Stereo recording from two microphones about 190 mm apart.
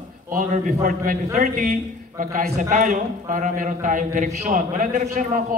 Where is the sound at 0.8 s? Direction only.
40° right (ahead or behind).